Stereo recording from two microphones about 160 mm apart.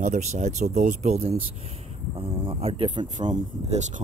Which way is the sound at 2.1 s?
35° right (ahead or behind).